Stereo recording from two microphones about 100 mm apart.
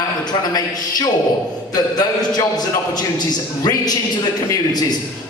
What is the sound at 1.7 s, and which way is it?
Speech, 40° left (ahead or behind).